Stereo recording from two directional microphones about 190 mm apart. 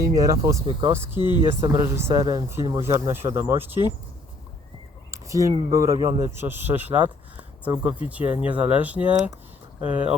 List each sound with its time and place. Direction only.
0.1 s speech: 20° right (ahead or behind)
1.2 s speech: 25° left (ahead or behind)
1.6 s speech: 15° right (ahead or behind)
5.1 s speech: 15° right (ahead or behind)